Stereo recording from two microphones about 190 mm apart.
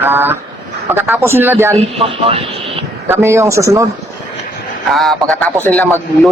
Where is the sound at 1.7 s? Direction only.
30° right (ahead or behind).